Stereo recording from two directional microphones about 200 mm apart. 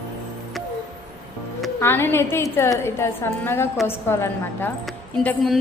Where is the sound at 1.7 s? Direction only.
10° left (ahead or behind).